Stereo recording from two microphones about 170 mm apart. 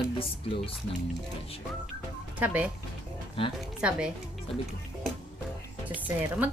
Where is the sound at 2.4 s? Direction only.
10° right (ahead or behind).